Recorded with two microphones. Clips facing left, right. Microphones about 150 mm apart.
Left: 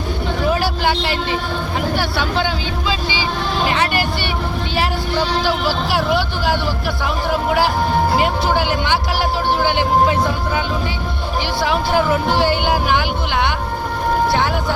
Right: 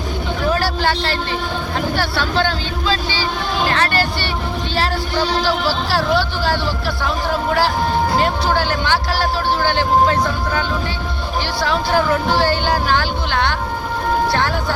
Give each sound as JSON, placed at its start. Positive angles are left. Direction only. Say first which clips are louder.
{"t": 0.4, "sound": "vehicle", "louder": "even", "side_deg": 15}
{"t": 2.0, "sound": "speech", "louder": "right 1 dB", "side_deg": 15}
{"t": 5.6, "sound": "speech", "louder": "even", "side_deg": 15}
{"t": 8.1, "sound": "speech", "louder": "even", "side_deg": 15}
{"t": 11.6, "sound": "speech", "louder": "even", "side_deg": 15}